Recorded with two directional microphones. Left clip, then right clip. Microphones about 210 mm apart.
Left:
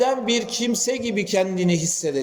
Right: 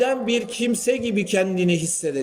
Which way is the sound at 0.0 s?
10° right (ahead or behind).